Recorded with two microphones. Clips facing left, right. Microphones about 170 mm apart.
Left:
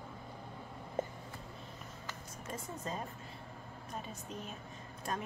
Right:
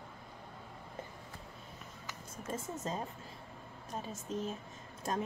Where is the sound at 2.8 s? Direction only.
30° right (ahead or behind).